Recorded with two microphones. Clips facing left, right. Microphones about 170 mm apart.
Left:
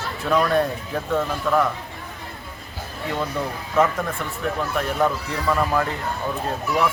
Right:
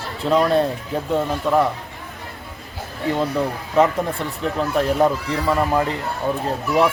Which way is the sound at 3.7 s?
30° right (ahead or behind).